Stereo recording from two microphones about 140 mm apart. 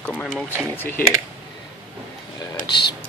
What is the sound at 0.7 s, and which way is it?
Speech, 15° left (ahead or behind).